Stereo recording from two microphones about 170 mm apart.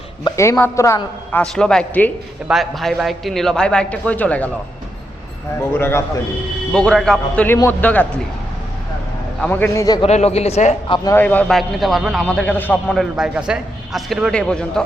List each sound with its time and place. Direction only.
0.3 s a man's voice: 15° left (ahead or behind)
5.7 s a man's voice: 15° left (ahead or behind)
9.4 s a man's voice: 10° left (ahead or behind)
10.1 s a man's voice: 40° left (ahead or behind)
11.1 s a man's voice: 10° left (ahead or behind)
12.9 s a man's voice: centre (ahead or behind)